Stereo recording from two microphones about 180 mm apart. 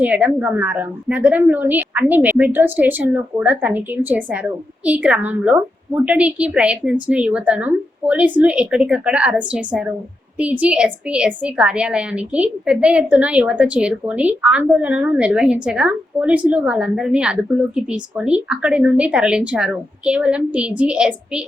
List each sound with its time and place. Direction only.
0.0 s a woman's voice: 10° right (ahead or behind)